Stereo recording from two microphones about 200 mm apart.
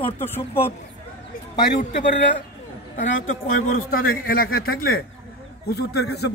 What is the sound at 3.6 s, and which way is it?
A man's voice, 45° left (ahead or behind).